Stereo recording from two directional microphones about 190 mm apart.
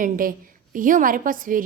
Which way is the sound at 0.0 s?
45° right (ahead or behind).